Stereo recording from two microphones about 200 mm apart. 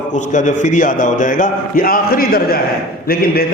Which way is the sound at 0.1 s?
40° left (ahead or behind).